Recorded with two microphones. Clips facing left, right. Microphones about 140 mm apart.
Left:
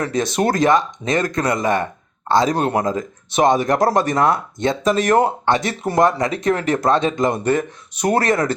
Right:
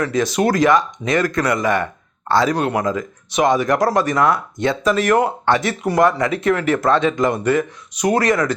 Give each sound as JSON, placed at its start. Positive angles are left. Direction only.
{"t": 0.0, "sound": "speech", "side_deg": 25}